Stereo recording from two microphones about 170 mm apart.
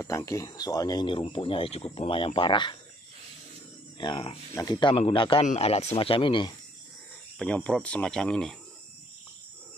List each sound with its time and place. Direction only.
0.0 s speech: 20° left (ahead or behind)
4.0 s speech: 30° left (ahead or behind)
7.3 s speech: 10° left (ahead or behind)